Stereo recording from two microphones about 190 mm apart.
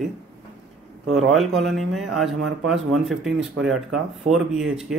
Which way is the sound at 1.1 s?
Centre (ahead or behind).